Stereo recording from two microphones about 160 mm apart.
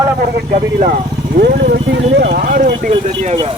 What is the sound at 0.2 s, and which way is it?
Speech, 70° right (ahead or behind).